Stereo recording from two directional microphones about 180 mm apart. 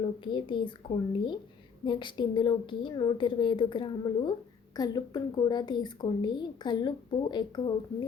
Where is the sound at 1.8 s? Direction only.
25° left (ahead or behind).